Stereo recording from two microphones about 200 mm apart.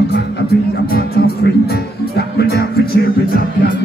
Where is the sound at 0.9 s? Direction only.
50° left (ahead or behind).